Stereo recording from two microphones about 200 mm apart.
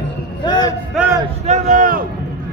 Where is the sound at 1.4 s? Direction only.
35° right (ahead or behind).